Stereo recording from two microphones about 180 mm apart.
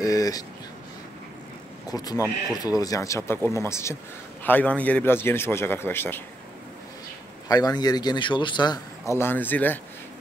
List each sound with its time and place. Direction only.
0.0 s a sound: 20° left (ahead or behind)
1.9 s a man's voice: 20° left (ahead or behind)
7.4 s a man's voice: 20° left (ahead or behind)